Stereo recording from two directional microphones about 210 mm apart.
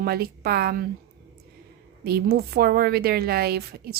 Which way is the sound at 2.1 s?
50° right (ahead or behind).